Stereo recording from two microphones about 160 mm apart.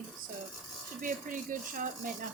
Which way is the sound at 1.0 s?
55° right (ahead or behind).